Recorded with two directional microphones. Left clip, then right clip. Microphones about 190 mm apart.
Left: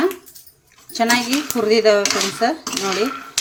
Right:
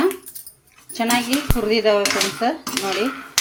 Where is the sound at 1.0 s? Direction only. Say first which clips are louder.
Left 3 dB; 15° left (ahead or behind).